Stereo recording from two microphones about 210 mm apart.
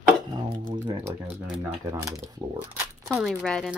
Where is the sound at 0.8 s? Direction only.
15° right (ahead or behind).